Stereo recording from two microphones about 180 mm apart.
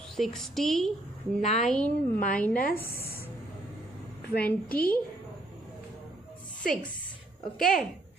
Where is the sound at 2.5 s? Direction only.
50° left (ahead or behind).